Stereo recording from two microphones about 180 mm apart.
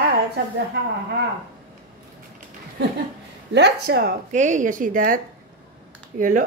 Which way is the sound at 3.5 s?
65° right (ahead or behind).